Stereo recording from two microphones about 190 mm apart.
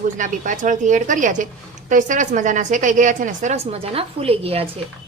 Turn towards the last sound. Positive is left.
turn(degrees=-30)  # may be behind; listen again after turning